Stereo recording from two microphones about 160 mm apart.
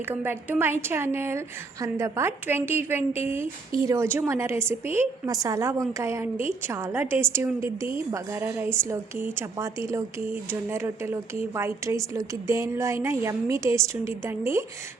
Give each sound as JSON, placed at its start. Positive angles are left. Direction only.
{"t": 0.1, "sound": "a woman's voice", "side_deg": -10}